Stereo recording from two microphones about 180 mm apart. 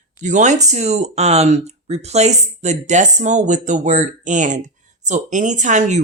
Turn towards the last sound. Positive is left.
turn(degrees=-45)  # may be behind; listen again after turning